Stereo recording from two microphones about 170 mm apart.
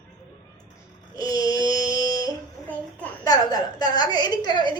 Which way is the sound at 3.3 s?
25° left (ahead or behind).